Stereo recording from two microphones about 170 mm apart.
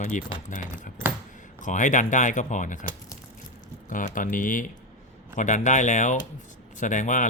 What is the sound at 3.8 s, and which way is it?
Speech, 50° left (ahead or behind).